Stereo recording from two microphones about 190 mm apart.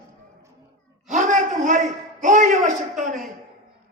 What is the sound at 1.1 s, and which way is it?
A man's voice, 40° right (ahead or behind).